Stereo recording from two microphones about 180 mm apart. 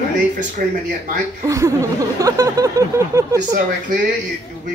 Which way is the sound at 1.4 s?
15° right (ahead or behind).